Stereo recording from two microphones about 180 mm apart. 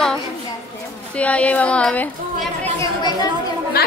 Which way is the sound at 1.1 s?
5° left (ahead or behind).